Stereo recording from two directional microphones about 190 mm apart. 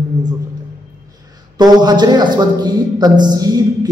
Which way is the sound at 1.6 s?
20° right (ahead or behind).